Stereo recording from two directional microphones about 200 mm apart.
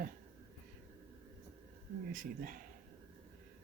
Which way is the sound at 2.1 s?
45° right (ahead or behind).